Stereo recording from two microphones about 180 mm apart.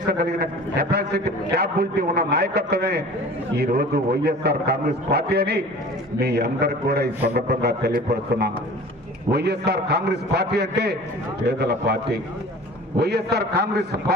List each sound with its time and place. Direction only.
0.1 s a man's voice: 60° right (ahead or behind)